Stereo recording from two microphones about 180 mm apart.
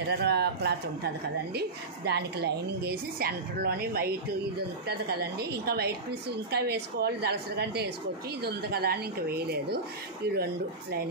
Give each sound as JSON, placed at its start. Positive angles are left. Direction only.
{"t": 0.1, "sound": "speech", "side_deg": -65}